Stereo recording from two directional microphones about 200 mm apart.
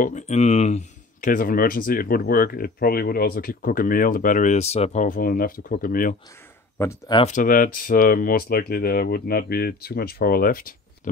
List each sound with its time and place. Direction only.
0.0 s speech: 35° left (ahead or behind)
6.8 s speech: 15° left (ahead or behind)
7.2 s speech: 35° left (ahead or behind)